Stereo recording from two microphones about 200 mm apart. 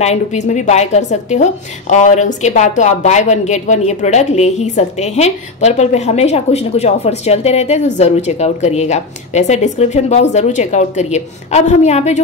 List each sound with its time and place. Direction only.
0.0 s a woman's voice: 35° left (ahead or behind)